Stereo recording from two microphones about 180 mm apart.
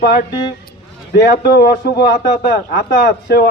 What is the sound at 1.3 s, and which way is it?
Speech, 55° left (ahead or behind).